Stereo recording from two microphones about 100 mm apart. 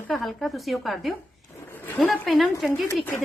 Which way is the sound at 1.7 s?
20° left (ahead or behind).